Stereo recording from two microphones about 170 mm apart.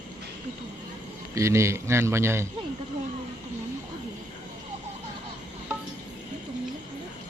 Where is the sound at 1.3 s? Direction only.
15° right (ahead or behind).